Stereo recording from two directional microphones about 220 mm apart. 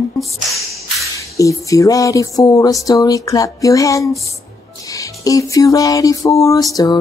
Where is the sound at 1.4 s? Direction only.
15° left (ahead or behind).